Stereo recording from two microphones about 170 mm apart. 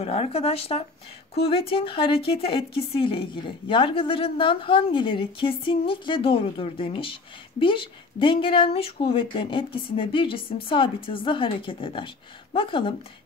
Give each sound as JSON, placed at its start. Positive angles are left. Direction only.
{"t": 0.0, "sound": "a woman's voice", "side_deg": 35}